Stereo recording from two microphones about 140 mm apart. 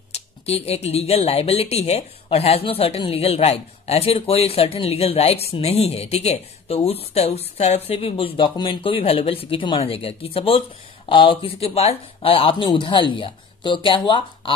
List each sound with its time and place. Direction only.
0.1 s speech: 45° left (ahead or behind)